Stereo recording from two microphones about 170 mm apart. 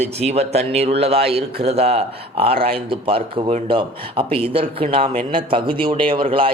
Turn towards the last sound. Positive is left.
turn(degrees=-30)  # may be behind; listen again after turning